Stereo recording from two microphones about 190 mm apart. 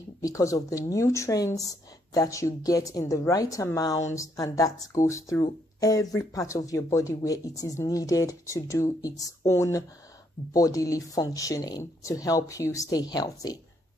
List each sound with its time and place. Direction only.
0.2 s speech: 15° left (ahead or behind)